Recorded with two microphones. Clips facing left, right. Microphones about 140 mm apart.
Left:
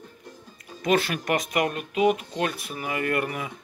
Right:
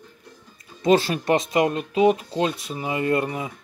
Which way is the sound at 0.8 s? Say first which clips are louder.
Right 5 dB; 30° right (ahead or behind).